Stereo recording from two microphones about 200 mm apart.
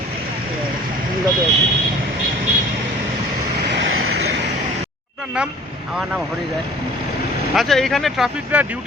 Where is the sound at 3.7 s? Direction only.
65° right (ahead or behind).